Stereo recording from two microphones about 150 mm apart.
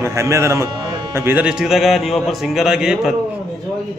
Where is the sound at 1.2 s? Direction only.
10° right (ahead or behind).